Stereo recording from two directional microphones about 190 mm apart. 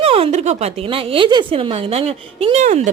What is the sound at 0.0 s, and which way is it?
A woman's voice, 30° right (ahead or behind).